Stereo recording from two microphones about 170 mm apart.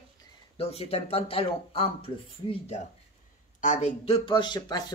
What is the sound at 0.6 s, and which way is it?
Speech, 35° left (ahead or behind).